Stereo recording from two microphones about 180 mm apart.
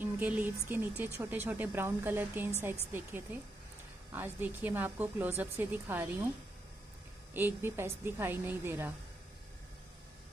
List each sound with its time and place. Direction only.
0.0 s speech: 10° right (ahead or behind)
7.3 s speech: 10° right (ahead or behind)